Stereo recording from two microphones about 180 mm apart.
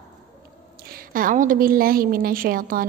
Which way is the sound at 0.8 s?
55° right (ahead or behind).